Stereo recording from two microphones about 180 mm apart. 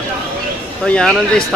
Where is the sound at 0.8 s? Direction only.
5° left (ahead or behind).